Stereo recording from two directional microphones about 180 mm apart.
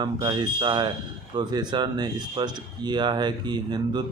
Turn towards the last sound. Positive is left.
turn(degrees=-25)  # may be behind; listen again after turning